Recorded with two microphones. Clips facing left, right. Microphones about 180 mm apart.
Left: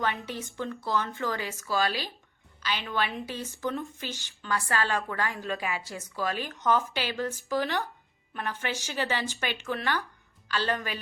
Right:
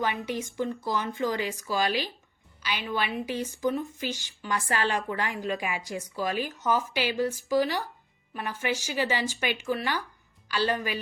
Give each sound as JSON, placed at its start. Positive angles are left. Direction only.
{"t": 0.0, "sound": "a woman's voice", "side_deg": -15}